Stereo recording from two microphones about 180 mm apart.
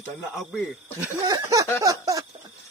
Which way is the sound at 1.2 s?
20° right (ahead or behind).